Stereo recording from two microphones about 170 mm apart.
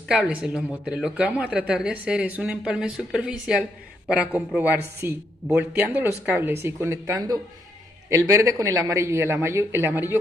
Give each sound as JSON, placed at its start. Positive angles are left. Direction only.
{"t": 0.1, "sound": "speech", "side_deg": -5}